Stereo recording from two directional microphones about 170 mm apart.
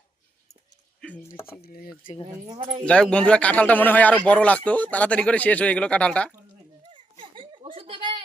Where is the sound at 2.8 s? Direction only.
5° left (ahead or behind).